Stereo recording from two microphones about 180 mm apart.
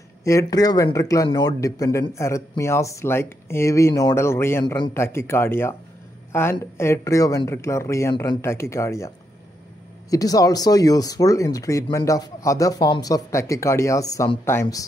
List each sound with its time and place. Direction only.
0.2 s speech: 15° left (ahead or behind)